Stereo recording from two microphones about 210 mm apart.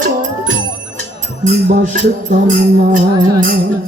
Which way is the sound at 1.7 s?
40° right (ahead or behind).